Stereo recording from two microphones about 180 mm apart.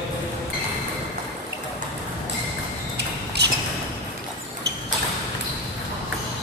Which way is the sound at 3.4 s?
65° right (ahead or behind).